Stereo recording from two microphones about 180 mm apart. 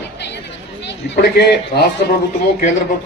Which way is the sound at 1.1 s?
65° left (ahead or behind).